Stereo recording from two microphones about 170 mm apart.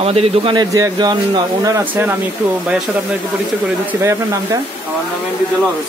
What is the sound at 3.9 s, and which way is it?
Speech, 15° right (ahead or behind).